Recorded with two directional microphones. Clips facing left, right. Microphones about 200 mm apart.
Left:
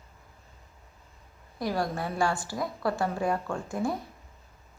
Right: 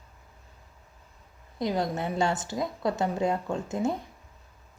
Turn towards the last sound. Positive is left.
turn(degrees=-20)  # may be behind; listen again after turning